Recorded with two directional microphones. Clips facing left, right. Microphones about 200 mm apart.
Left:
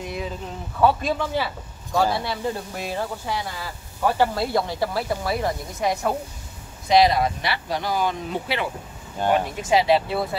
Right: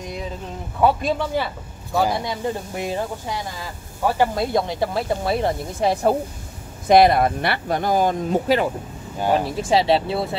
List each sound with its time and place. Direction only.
0.7 s speech: 15° right (ahead or behind)
6.9 s speech: 55° right (ahead or behind)
9.3 s speech: 30° right (ahead or behind)